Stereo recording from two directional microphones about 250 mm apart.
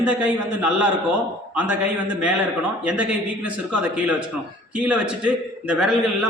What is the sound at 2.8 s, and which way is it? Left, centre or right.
A man's voice, centre.